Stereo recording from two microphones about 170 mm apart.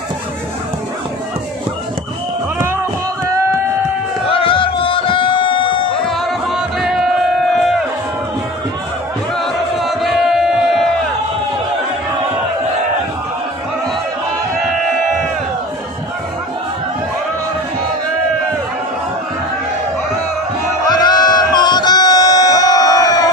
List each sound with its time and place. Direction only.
4.3 s music: 30° left (ahead or behind)
6.0 s music: centre (ahead or behind)
9.4 s a sound: centre (ahead or behind)
20.9 s music: 25° left (ahead or behind)